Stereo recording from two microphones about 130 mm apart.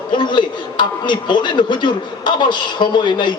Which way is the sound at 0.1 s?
35° left (ahead or behind).